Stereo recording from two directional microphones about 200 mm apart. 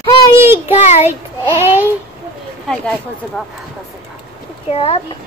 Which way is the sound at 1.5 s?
10° right (ahead or behind).